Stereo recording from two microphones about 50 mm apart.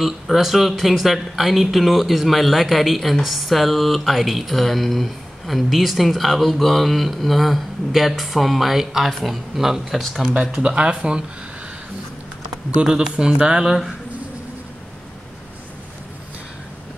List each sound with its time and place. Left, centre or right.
0.0 s speech: centre
10.6 s speech: right
12.8 s speech: centre